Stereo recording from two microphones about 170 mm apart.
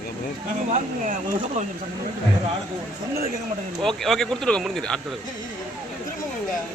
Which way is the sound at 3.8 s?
Centre (ahead or behind).